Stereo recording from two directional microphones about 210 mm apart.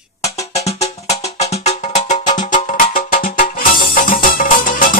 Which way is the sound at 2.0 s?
35° left (ahead or behind).